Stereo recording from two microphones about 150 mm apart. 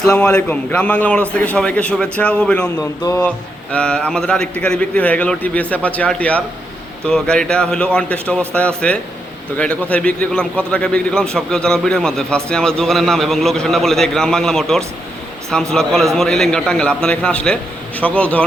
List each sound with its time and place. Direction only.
0.0 s a man's voice: 5° left (ahead or behind)
2.7 s speech: 20° left (ahead or behind)
3.2 s a man's voice: 5° left (ahead or behind)